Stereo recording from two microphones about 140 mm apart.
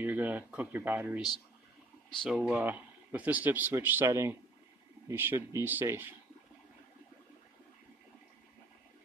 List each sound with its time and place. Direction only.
0.0 s a man's voice: 10° right (ahead or behind)
2.2 s a man's voice: 5° right (ahead or behind)